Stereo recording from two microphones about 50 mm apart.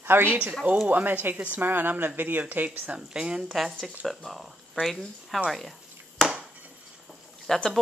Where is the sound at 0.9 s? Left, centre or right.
Right.